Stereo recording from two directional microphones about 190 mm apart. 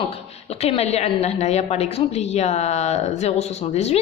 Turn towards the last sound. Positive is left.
turn(degrees=35)  # may be behind; listen again after turning